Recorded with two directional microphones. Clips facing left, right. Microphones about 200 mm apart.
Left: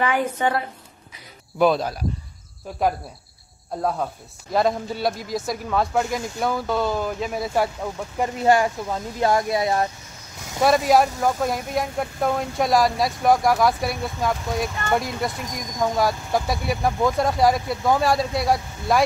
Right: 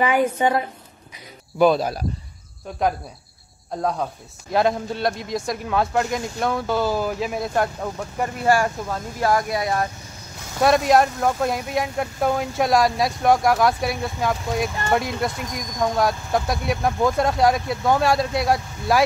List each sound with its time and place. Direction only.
0.0 s a woman's voice: 10° right (ahead or behind)
1.6 s speech: centre (ahead or behind)
3.7 s speech: 5° left (ahead or behind)
8.5 s speech: 20° left (ahead or behind)
10.6 s speech: centre (ahead or behind)